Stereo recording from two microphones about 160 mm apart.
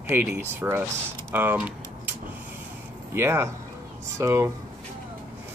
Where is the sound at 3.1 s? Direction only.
15° right (ahead or behind).